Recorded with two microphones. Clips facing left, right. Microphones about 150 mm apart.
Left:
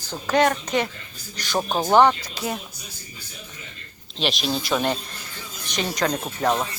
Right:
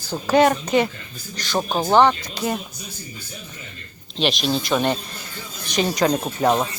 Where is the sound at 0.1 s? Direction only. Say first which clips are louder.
Right 4 dB; 5° right (ahead or behind).